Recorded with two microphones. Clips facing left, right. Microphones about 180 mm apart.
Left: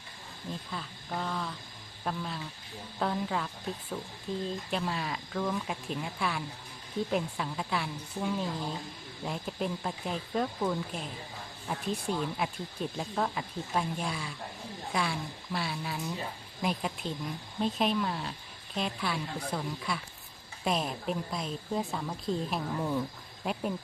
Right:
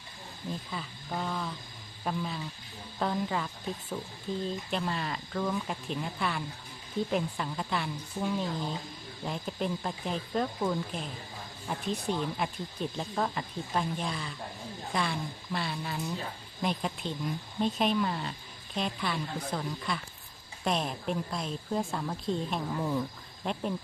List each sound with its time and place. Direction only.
0.7 s speech: 5° right (ahead or behind)